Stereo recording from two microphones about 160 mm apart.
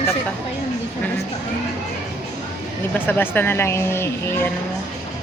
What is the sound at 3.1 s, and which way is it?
Speech, 10° left (ahead or behind).